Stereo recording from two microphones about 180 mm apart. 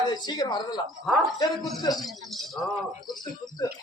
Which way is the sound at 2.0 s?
Centre (ahead or behind).